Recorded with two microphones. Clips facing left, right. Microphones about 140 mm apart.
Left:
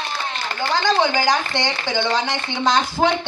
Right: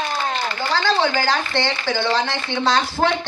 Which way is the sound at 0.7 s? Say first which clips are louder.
Left 1 dB; 15° left (ahead or behind).